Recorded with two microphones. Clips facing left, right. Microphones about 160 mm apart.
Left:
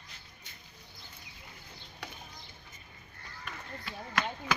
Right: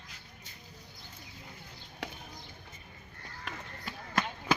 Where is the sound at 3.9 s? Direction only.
45° right (ahead or behind).